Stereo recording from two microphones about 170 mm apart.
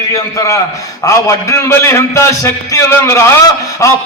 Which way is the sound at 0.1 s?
20° left (ahead or behind).